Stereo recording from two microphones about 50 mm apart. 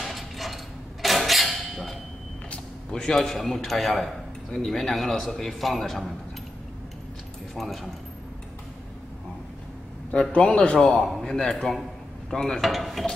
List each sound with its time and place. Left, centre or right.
0.0 s a sound: centre
2.9 s a man's voice: centre
3.9 s a man's voice: centre
7.5 s a man's voice: centre
10.3 s speech: left
11.0 s a man's voice: centre